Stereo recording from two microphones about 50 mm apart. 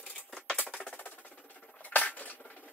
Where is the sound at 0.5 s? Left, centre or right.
Left.